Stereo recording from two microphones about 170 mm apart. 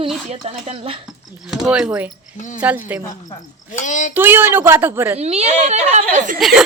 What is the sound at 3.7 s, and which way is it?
Speech, 45° left (ahead or behind).